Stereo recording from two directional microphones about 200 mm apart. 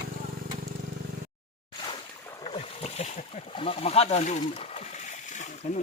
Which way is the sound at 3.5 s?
30° left (ahead or behind).